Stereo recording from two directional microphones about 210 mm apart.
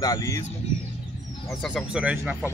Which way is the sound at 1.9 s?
5° right (ahead or behind).